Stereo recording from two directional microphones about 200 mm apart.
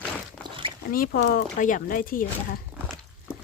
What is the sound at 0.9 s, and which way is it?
Speech, 45° left (ahead or behind).